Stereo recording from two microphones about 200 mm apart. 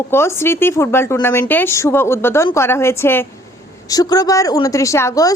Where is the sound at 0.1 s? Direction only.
10° left (ahead or behind).